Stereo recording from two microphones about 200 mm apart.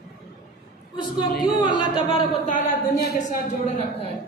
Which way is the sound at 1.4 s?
25° left (ahead or behind).